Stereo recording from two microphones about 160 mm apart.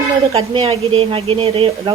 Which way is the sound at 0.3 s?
35° right (ahead or behind).